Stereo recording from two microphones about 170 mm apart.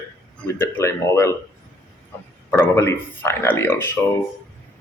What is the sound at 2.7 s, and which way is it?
Speech, 15° left (ahead or behind).